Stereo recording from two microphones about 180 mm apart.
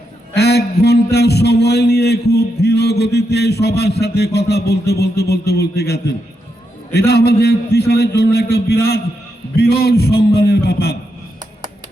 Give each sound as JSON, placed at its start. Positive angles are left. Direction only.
{"t": 0.3, "sound": "a man's voice", "side_deg": 65}